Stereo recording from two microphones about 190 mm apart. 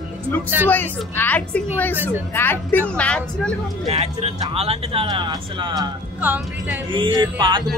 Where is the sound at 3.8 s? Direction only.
35° right (ahead or behind).